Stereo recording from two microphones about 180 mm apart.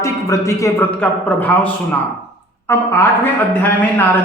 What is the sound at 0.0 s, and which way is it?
A man's voice, 15° left (ahead or behind).